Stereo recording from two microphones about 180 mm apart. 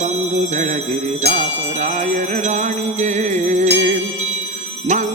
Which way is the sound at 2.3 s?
40° right (ahead or behind).